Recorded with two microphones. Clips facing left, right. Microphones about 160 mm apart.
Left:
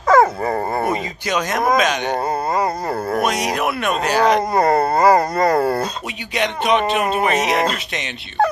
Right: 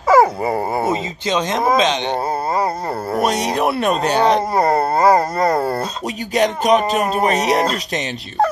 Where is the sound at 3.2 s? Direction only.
30° right (ahead or behind).